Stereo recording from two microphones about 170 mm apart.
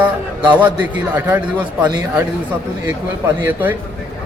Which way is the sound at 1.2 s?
10° right (ahead or behind).